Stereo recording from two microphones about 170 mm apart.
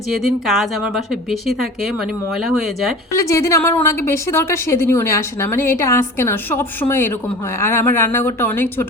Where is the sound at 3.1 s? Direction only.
20° left (ahead or behind).